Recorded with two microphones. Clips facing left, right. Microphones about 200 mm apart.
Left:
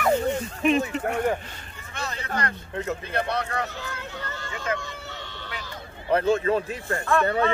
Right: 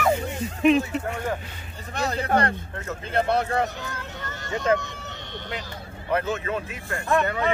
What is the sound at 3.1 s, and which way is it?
Speech, 25° right (ahead or behind).